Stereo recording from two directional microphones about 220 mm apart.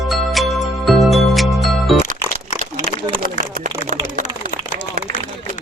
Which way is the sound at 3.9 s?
35° right (ahead or behind).